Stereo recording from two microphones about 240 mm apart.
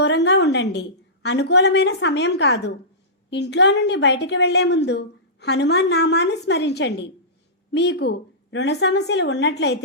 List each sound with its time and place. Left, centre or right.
0.0 s a woman's voice: left